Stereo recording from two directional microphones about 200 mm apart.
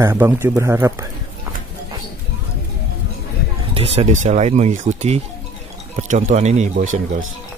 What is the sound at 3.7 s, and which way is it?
Speech, 30° right (ahead or behind).